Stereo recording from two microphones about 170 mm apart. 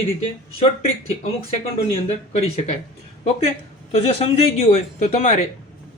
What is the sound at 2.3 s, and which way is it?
Speech, 40° left (ahead or behind).